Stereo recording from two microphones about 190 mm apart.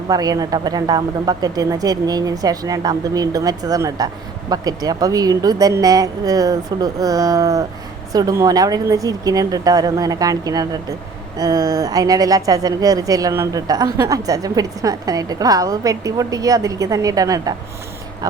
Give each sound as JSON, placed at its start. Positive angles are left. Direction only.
{"t": 0.1, "sound": "speech", "side_deg": -20}